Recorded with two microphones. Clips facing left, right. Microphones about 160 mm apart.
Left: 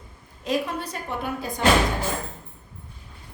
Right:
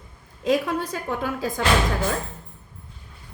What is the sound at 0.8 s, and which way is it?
Speech, 90° right.